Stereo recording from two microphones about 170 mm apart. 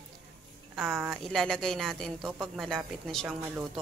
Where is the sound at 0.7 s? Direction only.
5° right (ahead or behind).